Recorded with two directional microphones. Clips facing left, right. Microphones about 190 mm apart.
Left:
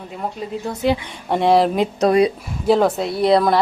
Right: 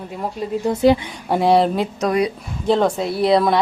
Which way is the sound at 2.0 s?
30° left (ahead or behind).